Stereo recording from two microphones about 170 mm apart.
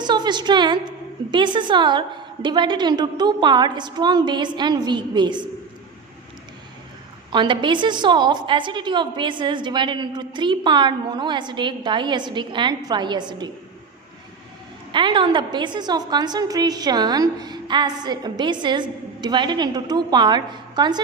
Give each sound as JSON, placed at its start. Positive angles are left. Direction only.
{"t": 0.0, "sound": "a woman's voice", "side_deg": -25}
{"t": 7.3, "sound": "a woman's voice", "side_deg": -30}
{"t": 14.9, "sound": "a woman's voice", "side_deg": -30}